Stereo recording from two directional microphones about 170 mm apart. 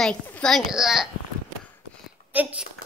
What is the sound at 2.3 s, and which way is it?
Speech, 10° right (ahead or behind).